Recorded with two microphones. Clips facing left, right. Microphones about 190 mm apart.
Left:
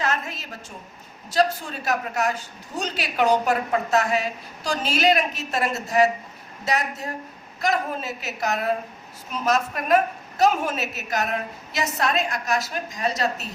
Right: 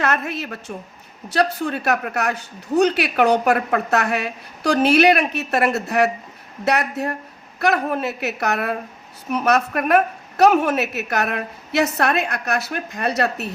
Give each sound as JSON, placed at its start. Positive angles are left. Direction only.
{"t": 0.0, "sound": "a woman's voice", "side_deg": -65}